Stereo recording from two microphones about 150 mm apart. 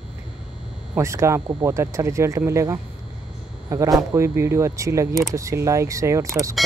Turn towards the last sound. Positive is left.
turn(degrees=-20)  # may be behind; listen again after turning